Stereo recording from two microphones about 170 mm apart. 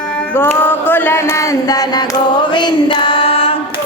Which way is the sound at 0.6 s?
10° left (ahead or behind).